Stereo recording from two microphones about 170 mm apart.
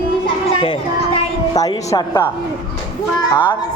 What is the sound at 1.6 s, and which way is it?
Speech, 20° left (ahead or behind).